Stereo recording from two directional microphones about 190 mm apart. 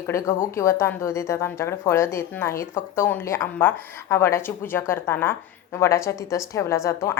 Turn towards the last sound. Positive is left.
turn(degrees=15)  # may be behind; listen again after turning